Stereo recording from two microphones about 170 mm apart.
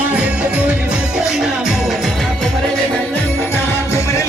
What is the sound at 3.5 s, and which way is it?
Music, 15° left (ahead or behind).